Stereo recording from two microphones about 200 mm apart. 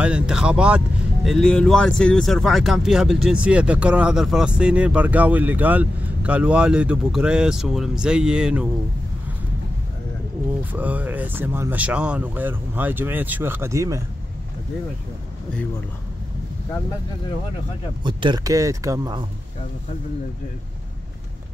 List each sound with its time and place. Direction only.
0.0 s speech: 5° right (ahead or behind)
10.6 s speech: 10° right (ahead or behind)
18.0 s speech: 20° right (ahead or behind)